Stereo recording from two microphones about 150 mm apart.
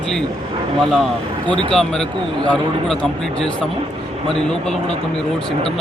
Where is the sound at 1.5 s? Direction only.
35° right (ahead or behind).